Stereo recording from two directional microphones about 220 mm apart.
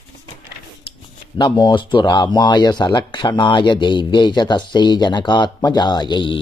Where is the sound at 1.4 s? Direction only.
20° left (ahead or behind).